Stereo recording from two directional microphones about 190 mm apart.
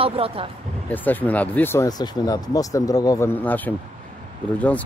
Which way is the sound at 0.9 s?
10° left (ahead or behind).